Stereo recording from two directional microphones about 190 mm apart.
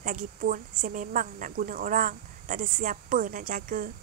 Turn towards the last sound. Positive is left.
turn(degrees=-45)  # may be behind; listen again after turning